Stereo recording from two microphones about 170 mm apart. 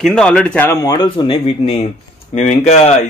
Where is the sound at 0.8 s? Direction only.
25° left (ahead or behind).